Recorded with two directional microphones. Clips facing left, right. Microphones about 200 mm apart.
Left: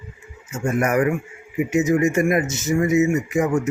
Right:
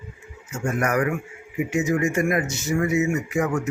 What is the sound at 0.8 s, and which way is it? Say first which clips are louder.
Speech: left 3 dB; 25° left (ahead or behind).